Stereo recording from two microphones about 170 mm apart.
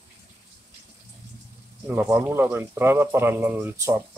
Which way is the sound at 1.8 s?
15° right (ahead or behind).